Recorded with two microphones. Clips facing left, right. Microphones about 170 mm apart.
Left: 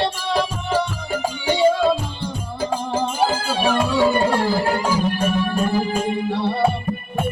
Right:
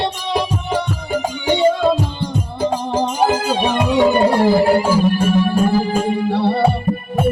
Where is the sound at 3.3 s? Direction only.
20° right (ahead or behind).